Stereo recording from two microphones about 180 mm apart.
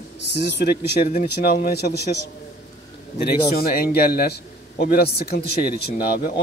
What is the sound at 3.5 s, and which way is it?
A man's voice, 55° left (ahead or behind).